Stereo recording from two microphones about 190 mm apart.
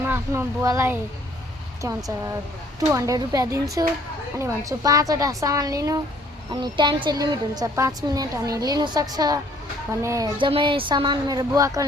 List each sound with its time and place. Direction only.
0.0 s speech: 10° right (ahead or behind)
2.9 s a woman's voice: 15° right (ahead or behind)
10.3 s a woman's voice: 25° right (ahead or behind)